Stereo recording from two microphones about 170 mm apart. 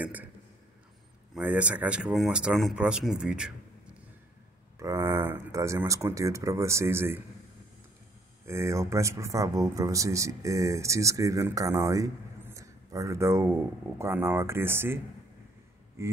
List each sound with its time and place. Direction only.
0.0 s speech: 10° right (ahead or behind)
1.3 s speech: 10° right (ahead or behind)
4.7 s speech: 15° right (ahead or behind)
8.5 s speech: 15° right (ahead or behind)
16.0 s speech: 15° right (ahead or behind)